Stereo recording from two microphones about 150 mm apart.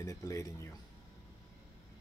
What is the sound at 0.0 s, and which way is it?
Speech, 20° left (ahead or behind).